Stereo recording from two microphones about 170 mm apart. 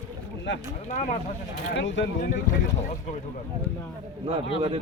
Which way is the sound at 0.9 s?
45° left (ahead or behind).